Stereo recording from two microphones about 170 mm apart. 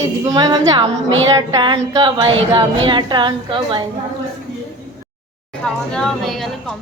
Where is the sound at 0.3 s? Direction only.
20° right (ahead or behind).